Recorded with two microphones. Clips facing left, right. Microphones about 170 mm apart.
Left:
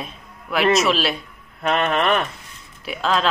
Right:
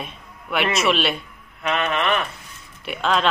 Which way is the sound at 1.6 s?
40° left (ahead or behind).